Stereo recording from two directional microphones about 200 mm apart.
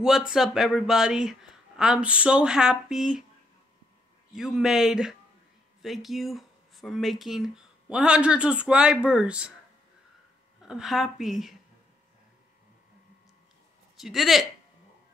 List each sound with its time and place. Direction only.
0.3 s speech: centre (ahead or behind)
4.4 s speech: centre (ahead or behind)
10.6 s speech: centre (ahead or behind)
13.9 s speech: centre (ahead or behind)